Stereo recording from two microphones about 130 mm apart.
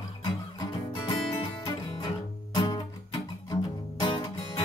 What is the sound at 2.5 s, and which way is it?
Music, 35° left (ahead or behind).